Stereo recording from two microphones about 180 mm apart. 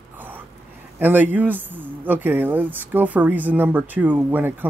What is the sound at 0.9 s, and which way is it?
Speech, 10° right (ahead or behind).